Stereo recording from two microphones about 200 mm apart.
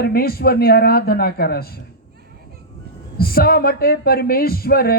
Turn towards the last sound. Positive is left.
turn(degrees=50)  # may be behind; listen again after turning